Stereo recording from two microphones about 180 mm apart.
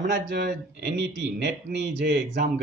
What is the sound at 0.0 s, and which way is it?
A man's voice, 70° right (ahead or behind).